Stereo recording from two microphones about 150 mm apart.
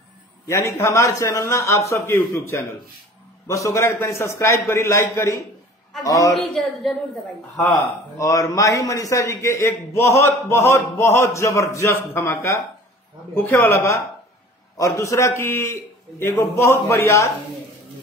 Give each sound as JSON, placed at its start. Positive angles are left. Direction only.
{"t": 0.5, "sound": "a man's voice", "side_deg": 20}
{"t": 6.3, "sound": "speech", "side_deg": 0}
{"t": 8.2, "sound": "a man's voice", "side_deg": 20}